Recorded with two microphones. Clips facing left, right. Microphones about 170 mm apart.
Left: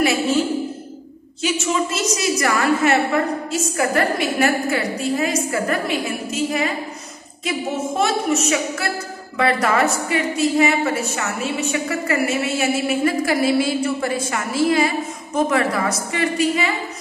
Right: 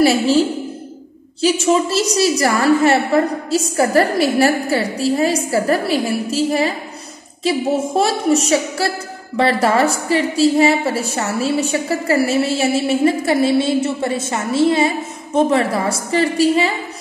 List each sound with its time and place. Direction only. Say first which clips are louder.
0.0 s a woman's voice: right 5 dB; 35° right (ahead or behind)